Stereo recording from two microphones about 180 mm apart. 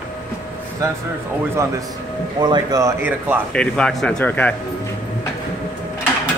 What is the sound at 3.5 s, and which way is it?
Speech, 5° left (ahead or behind).